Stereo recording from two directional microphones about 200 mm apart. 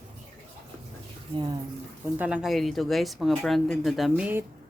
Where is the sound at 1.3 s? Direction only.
25° right (ahead or behind).